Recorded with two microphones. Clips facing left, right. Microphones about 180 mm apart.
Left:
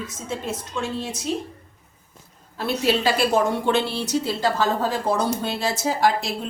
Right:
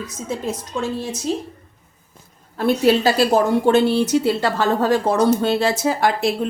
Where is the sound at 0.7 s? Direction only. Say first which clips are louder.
Right 4 dB; 40° right (ahead or behind).